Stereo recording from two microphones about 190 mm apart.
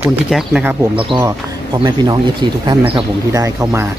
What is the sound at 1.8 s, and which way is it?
Speech, 20° right (ahead or behind).